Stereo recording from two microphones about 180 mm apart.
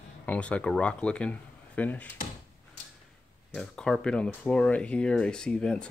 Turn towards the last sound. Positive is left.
turn(degrees=5)  # may be behind; listen again after turning